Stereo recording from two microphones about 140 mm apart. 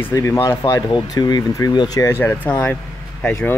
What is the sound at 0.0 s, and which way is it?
Speech, 20° left (ahead or behind).